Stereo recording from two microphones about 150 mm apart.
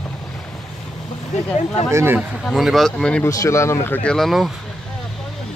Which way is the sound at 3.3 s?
20° left (ahead or behind).